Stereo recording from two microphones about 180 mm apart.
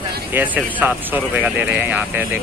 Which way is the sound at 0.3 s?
10° right (ahead or behind).